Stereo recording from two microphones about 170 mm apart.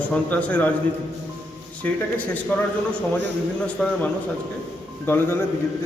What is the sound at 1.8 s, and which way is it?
Speech, 10° left (ahead or behind).